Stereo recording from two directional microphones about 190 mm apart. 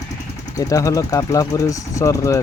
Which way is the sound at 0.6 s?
20° left (ahead or behind).